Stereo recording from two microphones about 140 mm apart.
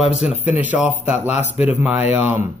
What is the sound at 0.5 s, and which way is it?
Speech, 10° right (ahead or behind).